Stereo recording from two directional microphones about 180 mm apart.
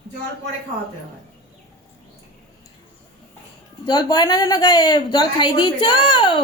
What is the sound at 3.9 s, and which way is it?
A woman's voice, 25° left (ahead or behind).